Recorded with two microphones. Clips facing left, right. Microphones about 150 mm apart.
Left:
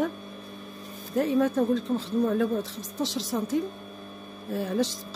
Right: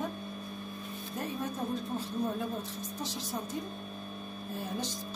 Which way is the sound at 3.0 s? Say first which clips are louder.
Left 10 dB; 90° left.